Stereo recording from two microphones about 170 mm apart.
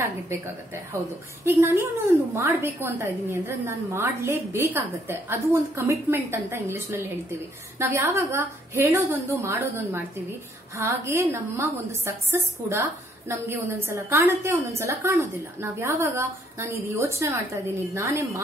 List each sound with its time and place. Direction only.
1.4 s a woman's voice: 15° right (ahead or behind)